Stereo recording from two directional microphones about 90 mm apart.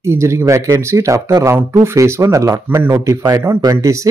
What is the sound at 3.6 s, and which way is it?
Speech, 40° right (ahead or behind).